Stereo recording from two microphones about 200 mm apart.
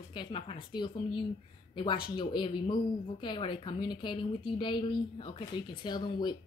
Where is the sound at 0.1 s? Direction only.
25° left (ahead or behind).